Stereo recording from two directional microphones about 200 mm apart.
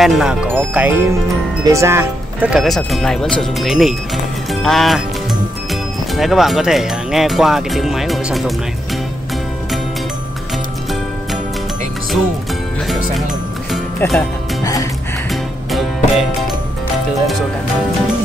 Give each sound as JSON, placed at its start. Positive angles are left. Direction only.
{"t": 0.0, "sound": "speech", "side_deg": 0}
{"t": 13.7, "sound": "music", "side_deg": 0}
{"t": 14.6, "sound": "music", "side_deg": 15}
{"t": 15.7, "sound": "music", "side_deg": 0}